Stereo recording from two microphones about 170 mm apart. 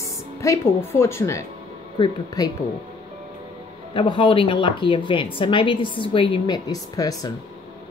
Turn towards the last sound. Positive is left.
turn(degrees=20)  # may be behind; listen again after turning